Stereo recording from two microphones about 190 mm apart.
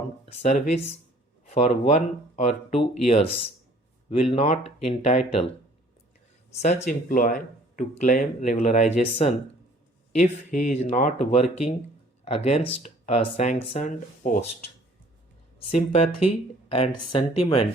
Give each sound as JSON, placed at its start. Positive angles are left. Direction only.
{"t": 0.4, "sound": "speech", "side_deg": 40}
{"t": 3.1, "sound": "speech", "side_deg": 30}
{"t": 6.6, "sound": "speech", "side_deg": 35}
{"t": 10.5, "sound": "speech", "side_deg": 40}
{"t": 15.5, "sound": "speech", "side_deg": 35}